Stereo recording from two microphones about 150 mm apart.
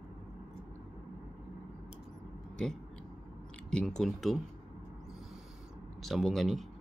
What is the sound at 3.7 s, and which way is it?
Speech, 5° left (ahead or behind).